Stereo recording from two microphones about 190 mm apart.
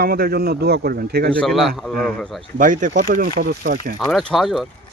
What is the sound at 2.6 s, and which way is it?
A man's voice, 40° right (ahead or behind).